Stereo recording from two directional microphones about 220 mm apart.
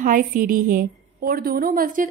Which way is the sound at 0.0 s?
40° right (ahead or behind).